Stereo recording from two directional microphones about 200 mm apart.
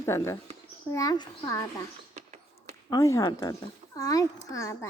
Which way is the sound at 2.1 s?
35° right (ahead or behind).